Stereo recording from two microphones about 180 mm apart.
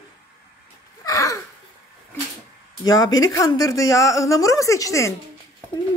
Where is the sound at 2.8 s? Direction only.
20° left (ahead or behind).